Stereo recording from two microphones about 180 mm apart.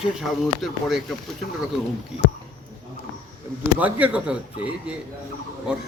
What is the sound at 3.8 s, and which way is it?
Speech, 10° right (ahead or behind).